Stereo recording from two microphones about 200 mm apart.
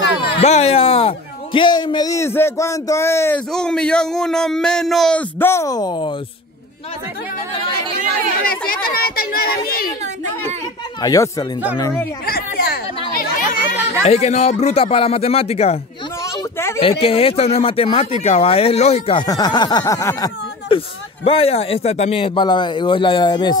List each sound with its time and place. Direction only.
0.4 s a man's voice: 30° left (ahead or behind)
8.4 s a child's voice: 45° left (ahead or behind)
11.0 s a man's voice: 15° left (ahead or behind)
12.3 s a sound: 50° left (ahead or behind)
13.1 s chatter: 45° left (ahead or behind)
14.0 s speech: 35° left (ahead or behind)
16.5 s a sound: 15° left (ahead or behind)
16.8 s speech: 30° left (ahead or behind)
20.6 s speech: 30° left (ahead or behind)